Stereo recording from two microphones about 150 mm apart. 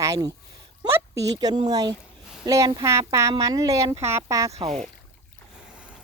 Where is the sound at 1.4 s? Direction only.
25° right (ahead or behind).